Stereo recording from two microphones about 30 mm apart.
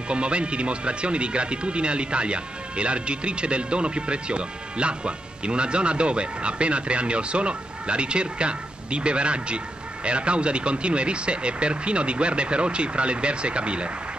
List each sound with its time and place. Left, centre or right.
0.1 s speech: right